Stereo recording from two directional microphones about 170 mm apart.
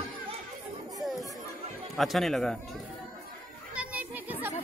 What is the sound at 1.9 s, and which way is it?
Speech, centre (ahead or behind).